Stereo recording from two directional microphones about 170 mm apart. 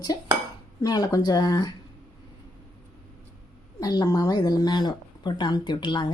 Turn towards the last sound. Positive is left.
turn(degrees=25)  # may be behind; listen again after turning